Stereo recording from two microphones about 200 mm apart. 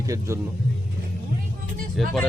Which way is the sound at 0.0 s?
15° right (ahead or behind).